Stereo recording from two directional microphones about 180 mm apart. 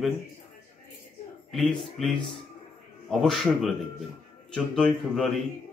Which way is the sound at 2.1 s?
30° left (ahead or behind).